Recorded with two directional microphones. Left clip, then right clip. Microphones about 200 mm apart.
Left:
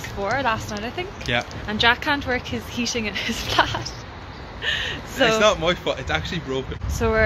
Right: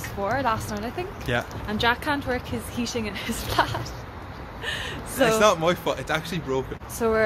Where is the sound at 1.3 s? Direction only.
30° right (ahead or behind).